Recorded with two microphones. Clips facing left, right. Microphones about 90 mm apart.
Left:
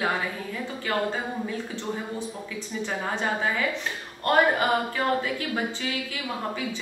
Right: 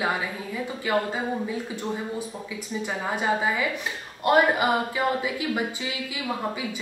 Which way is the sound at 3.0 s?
10° right (ahead or behind).